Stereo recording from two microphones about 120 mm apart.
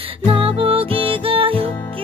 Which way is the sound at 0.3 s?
50° right (ahead or behind).